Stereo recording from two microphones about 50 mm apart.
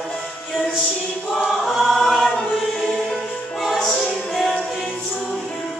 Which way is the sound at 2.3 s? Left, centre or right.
Centre.